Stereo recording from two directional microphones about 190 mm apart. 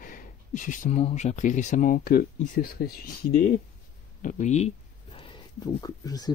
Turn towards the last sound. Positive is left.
turn(degrees=20)  # may be behind; listen again after turning